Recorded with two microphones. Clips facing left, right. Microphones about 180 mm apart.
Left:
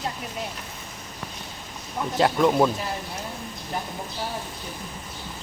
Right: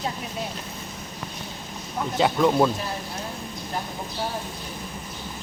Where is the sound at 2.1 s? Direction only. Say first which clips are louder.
Even; centre (ahead or behind).